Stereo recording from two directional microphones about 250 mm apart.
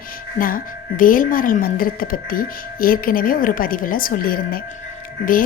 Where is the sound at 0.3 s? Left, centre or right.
Left.